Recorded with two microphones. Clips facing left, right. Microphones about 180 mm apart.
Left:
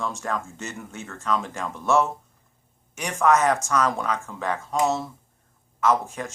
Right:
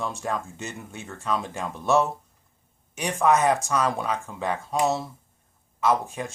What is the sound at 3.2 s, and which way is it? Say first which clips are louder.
Speech: left 1 dB; 15° right (ahead or behind).